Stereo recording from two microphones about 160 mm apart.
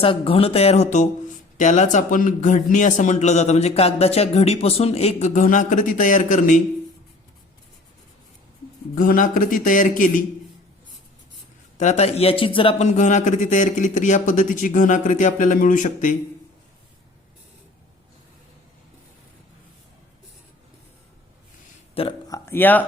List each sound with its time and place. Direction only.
0.0 s speech: 35° left (ahead or behind); by 6.6 s 50° left (ahead or behind)
9.0 s a man's voice: 60° left (ahead or behind)
11.8 s speech: 45° left (ahead or behind)
22.0 s speech: 35° left (ahead or behind)
22.3 s a sound: 15° left (ahead or behind)